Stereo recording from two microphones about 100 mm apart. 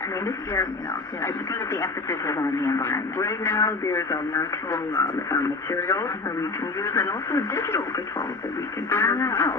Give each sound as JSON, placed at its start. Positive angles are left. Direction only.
{"t": 1.2, "sound": "speech", "side_deg": 30}
{"t": 8.9, "sound": "speech", "side_deg": 30}